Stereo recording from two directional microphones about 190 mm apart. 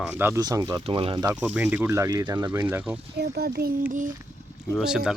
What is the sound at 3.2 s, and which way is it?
Speech, 60° right (ahead or behind).